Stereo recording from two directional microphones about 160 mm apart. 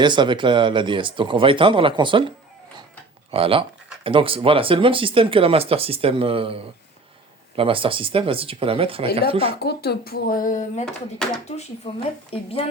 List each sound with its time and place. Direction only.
0.0 s speech: 30° right (ahead or behind)
3.3 s speech: 35° right (ahead or behind)
9.6 s speech: 90° left; by 10.8 s 50° left (ahead or behind)
10.8 s speech: 5° left (ahead or behind)
11.9 s a woman's voice: 35° left (ahead or behind)